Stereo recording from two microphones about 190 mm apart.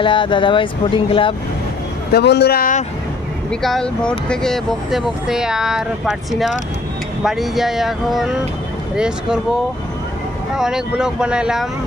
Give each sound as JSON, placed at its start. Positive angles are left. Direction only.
{"t": 0.0, "sound": "speech", "side_deg": 25}
{"t": 2.1, "sound": "speech", "side_deg": 60}
{"t": 3.5, "sound": "speech", "side_deg": 0}